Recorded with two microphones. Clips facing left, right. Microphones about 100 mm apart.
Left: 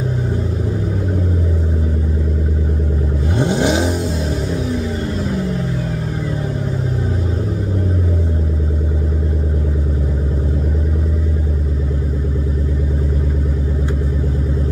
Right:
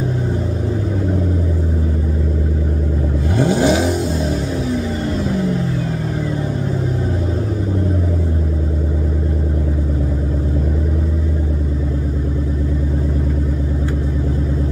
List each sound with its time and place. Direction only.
3.3 s vehicle: 25° left (ahead or behind)